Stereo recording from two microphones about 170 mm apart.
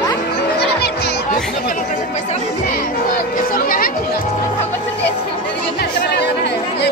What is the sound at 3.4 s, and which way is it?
Chatter, 55° left (ahead or behind).